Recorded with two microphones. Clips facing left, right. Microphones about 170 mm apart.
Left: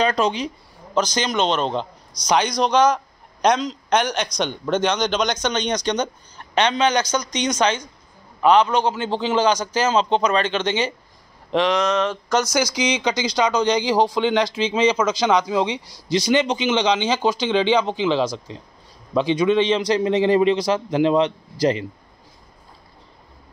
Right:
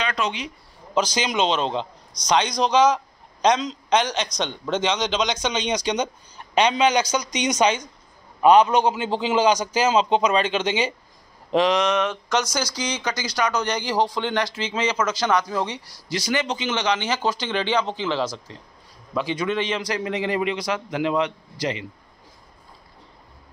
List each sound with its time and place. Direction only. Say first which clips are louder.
0.0 s speech: left 6 dB; 35° left (ahead or behind)
0.9 s a man's voice: left 1 dB; 5° right (ahead or behind)
12.4 s speech: left 5 dB; 15° left (ahead or behind); by 21.8 s 40° left (ahead or behind)